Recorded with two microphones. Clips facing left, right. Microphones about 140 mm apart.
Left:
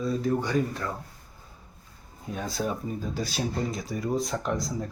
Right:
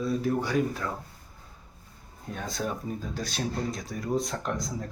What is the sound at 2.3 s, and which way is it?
Speech, centre (ahead or behind).